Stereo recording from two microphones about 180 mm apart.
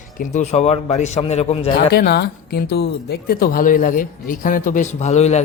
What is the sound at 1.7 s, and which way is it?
Speech, 60° left (ahead or behind).